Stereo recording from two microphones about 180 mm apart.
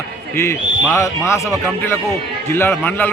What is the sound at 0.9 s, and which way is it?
A man's voice, 15° left (ahead or behind).